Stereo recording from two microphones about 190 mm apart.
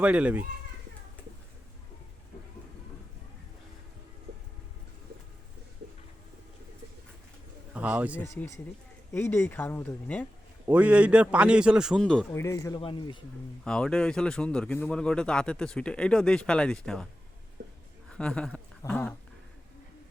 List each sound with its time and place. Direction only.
0.0 s a child's voice: 5° right (ahead or behind)
4.3 s a sound: 65° right (ahead or behind)
7.7 s speech: 10° right (ahead or behind)
8.2 s speech: 15° left (ahead or behind)
10.7 s speech: 10° right (ahead or behind)
12.3 s speech: 15° left (ahead or behind)
13.7 s speech: 5° left (ahead or behind)
17.6 s a sound: 65° right (ahead or behind)
18.1 s speech: 5° left (ahead or behind)